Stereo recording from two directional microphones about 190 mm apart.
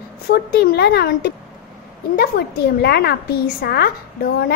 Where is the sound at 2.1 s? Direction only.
55° left (ahead or behind).